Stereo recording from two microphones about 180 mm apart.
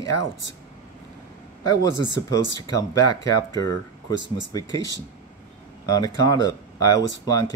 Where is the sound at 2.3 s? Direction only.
20° left (ahead or behind).